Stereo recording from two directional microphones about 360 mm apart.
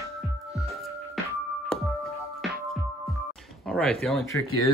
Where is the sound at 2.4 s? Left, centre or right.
Right.